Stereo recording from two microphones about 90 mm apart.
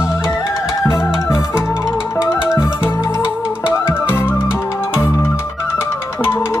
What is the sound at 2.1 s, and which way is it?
Music, 25° left (ahead or behind).